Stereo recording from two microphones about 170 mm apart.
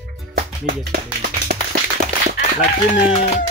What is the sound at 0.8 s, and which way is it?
Speech, 65° right (ahead or behind).